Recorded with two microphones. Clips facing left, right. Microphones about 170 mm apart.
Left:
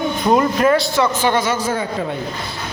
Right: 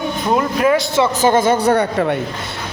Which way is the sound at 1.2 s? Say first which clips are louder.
Right 5 dB; 45° right (ahead or behind).